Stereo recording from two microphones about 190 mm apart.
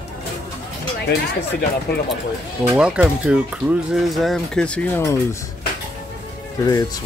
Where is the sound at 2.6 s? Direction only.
10° right (ahead or behind); by 5.2 s 10° left (ahead or behind).